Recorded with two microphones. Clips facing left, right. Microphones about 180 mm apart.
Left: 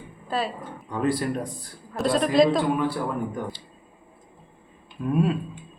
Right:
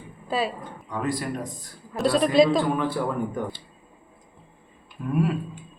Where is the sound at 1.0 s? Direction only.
30° left (ahead or behind).